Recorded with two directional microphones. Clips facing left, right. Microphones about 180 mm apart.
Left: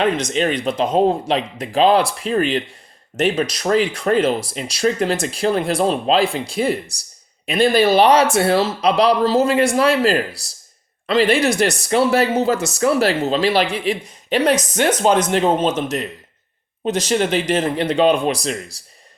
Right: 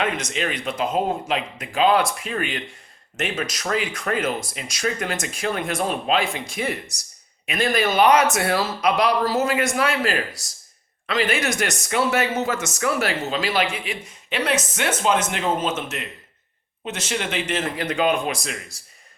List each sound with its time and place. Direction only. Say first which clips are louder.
0.0 s speech: left 7 dB; 35° left (ahead or behind)